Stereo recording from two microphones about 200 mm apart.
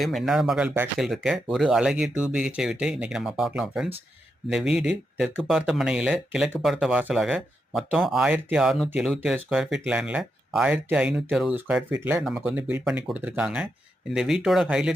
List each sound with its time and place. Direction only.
0.0 s speech: centre (ahead or behind)